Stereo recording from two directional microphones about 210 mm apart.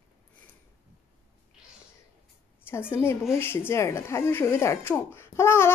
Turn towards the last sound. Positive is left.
turn(degrees=10)  # may be behind; listen again after turning